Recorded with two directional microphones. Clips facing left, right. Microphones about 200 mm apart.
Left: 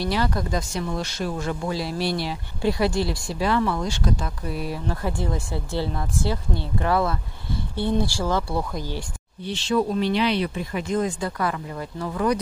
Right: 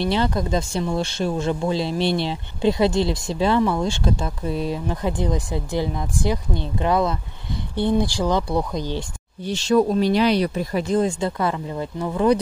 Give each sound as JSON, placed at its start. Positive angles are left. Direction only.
{"t": 0.0, "sound": "speech", "side_deg": -25}
{"t": 9.5, "sound": "speech", "side_deg": -45}